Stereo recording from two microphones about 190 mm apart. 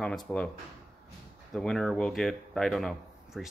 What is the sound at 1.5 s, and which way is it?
Speech, centre (ahead or behind).